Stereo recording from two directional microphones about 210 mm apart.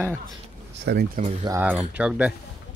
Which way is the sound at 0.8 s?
45° right (ahead or behind).